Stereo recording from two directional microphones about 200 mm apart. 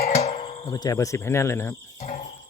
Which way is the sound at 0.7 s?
20° left (ahead or behind).